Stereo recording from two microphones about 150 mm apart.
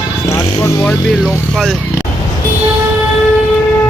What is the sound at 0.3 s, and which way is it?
Vehicle, 20° left (ahead or behind).